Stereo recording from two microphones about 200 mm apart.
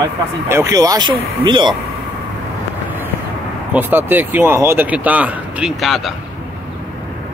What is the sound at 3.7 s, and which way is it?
Speech, 10° right (ahead or behind).